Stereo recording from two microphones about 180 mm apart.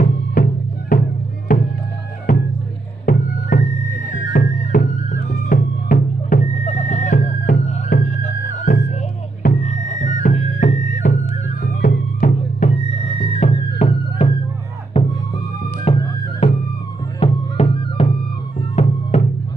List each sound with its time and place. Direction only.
0.0 s music: 50° left (ahead or behind)
3.1 s music: 50° left (ahead or behind); by 14.3 s 35° left (ahead or behind)
15.8 s music: 35° left (ahead or behind)